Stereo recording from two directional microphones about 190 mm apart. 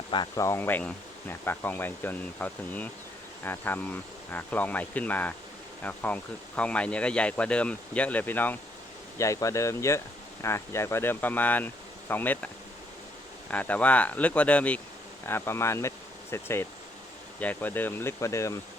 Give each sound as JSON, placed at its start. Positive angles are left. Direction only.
{"t": 0.1, "sound": "speech", "side_deg": 20}
{"t": 13.5, "sound": "speech", "side_deg": 10}